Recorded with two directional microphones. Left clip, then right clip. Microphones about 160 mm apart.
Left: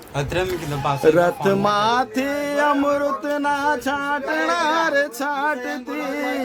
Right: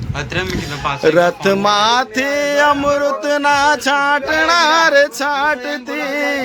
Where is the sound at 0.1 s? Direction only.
60° left (ahead or behind).